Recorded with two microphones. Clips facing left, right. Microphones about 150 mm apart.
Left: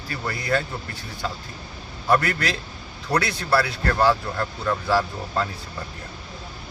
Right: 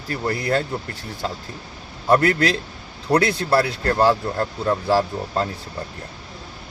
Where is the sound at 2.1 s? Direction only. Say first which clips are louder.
Right 5 dB; 30° right (ahead or behind).